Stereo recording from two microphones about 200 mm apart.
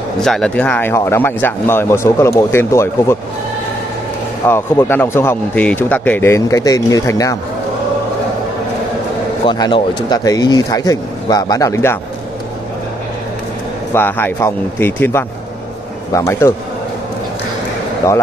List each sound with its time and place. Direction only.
0.2 s speech: 5° left (ahead or behind)
4.5 s speech: 10° left (ahead or behind)
9.5 s speech: 25° left (ahead or behind)
13.9 s speech: 10° left (ahead or behind)